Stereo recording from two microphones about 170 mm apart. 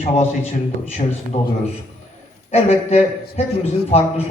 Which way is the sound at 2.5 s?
40° left (ahead or behind).